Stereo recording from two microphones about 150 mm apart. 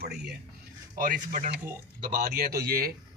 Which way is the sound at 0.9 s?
65° right (ahead or behind).